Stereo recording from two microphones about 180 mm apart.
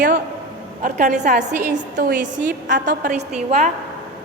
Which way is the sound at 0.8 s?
45° right (ahead or behind).